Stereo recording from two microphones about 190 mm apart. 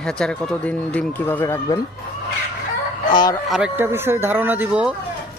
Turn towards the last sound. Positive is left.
turn(degrees=-10)  # may be behind; listen again after turning